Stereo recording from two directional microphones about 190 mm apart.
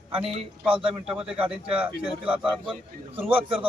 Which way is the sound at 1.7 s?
5° right (ahead or behind).